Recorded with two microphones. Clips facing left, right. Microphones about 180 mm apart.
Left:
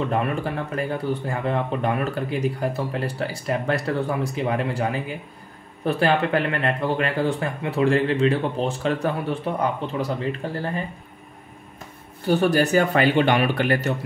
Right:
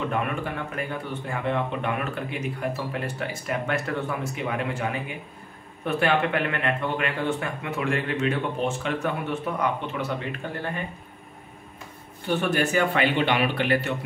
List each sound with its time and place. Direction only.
0.1 s speech: 35° left (ahead or behind)
12.3 s speech: 35° left (ahead or behind)